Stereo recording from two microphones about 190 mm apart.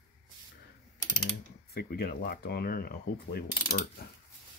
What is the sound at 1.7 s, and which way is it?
Speech, 55° left (ahead or behind).